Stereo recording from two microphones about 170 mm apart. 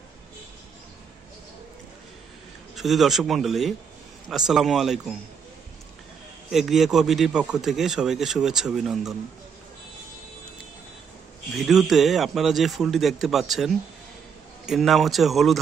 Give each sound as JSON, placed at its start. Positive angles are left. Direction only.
{"t": 2.7, "sound": "speech", "side_deg": 0}
{"t": 6.5, "sound": "speech", "side_deg": 0}
{"t": 11.5, "sound": "speech", "side_deg": 0}